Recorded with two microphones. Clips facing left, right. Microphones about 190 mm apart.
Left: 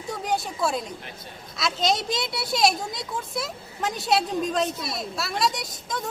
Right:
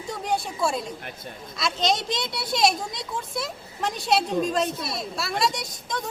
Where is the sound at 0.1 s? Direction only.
Centre (ahead or behind).